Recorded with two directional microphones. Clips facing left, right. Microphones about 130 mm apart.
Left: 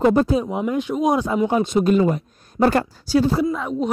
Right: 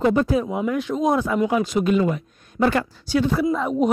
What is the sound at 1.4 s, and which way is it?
Speech, 30° left (ahead or behind).